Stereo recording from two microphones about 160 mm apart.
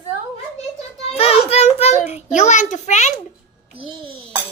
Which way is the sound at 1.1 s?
40° left (ahead or behind).